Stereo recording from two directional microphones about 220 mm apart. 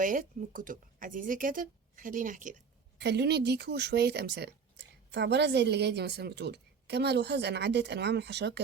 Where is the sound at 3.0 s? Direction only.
50° right (ahead or behind).